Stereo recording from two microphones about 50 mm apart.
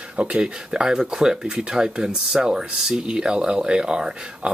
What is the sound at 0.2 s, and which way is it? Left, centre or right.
Speech, right.